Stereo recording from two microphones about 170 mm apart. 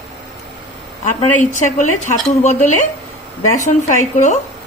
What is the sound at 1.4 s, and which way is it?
Speech, 45° left (ahead or behind).